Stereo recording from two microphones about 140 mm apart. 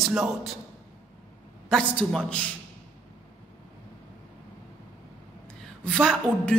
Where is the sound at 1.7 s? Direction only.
5° left (ahead or behind).